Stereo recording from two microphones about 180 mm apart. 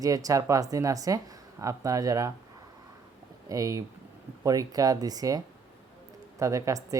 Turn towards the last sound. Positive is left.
turn(degrees=-15)  # may be behind; listen again after turning